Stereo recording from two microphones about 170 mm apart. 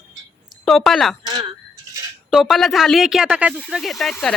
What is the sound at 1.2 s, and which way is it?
Speech, 25° right (ahead or behind).